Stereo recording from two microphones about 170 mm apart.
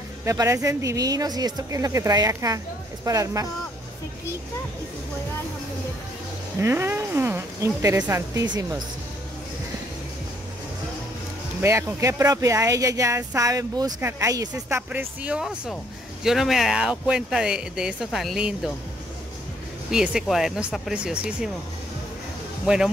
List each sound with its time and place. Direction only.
0.2 s speech: 15° right (ahead or behind)
6.6 s speech: 15° right (ahead or behind)
11.6 s speech: 15° right (ahead or behind)
14.5 s speech: 10° right (ahead or behind)
19.9 s speech: 5° right (ahead or behind)